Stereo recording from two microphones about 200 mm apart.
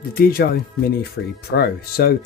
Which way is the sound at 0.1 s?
45° left (ahead or behind).